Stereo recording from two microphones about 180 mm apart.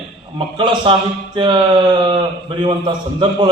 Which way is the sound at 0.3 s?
25° right (ahead or behind).